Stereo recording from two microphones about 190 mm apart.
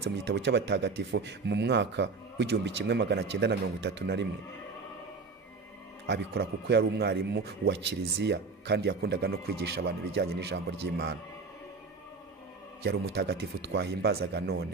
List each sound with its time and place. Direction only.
0.0 s a man's voice: 65° right (ahead or behind)
6.0 s a man's voice: 60° right (ahead or behind)
12.8 s a man's voice: 60° right (ahead or behind)